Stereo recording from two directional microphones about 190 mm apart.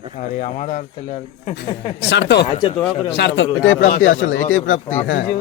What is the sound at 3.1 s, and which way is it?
Speech, 65° left (ahead or behind).